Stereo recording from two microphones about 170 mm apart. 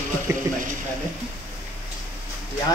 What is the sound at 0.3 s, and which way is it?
Speech, 15° right (ahead or behind).